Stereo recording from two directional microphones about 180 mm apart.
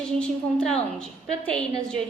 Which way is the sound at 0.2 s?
5° left (ahead or behind).